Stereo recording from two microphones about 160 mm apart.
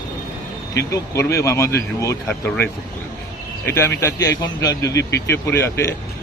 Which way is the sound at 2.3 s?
10° left (ahead or behind).